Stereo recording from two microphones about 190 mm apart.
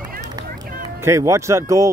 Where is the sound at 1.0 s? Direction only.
15° right (ahead or behind).